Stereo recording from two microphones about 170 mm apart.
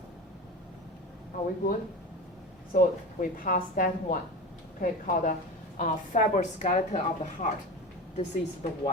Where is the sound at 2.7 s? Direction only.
55° left (ahead or behind).